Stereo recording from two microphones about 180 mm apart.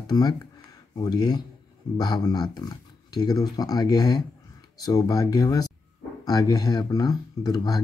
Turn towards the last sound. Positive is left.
turn(degrees=20)  # may be behind; listen again after turning